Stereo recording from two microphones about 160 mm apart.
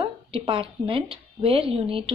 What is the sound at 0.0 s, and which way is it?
Speech, 35° right (ahead or behind).